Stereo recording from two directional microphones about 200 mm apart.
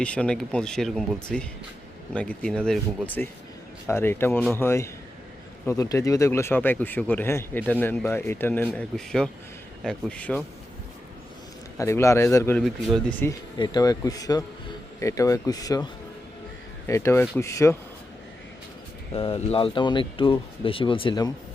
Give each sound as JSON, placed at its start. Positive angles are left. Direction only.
{"t": 0.0, "sound": "speech", "side_deg": 5}
{"t": 11.8, "sound": "speech", "side_deg": 15}
{"t": 13.6, "sound": "speech", "side_deg": 20}
{"t": 19.1, "sound": "speech", "side_deg": 30}